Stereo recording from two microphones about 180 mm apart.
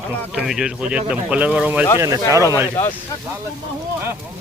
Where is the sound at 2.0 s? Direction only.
20° right (ahead or behind).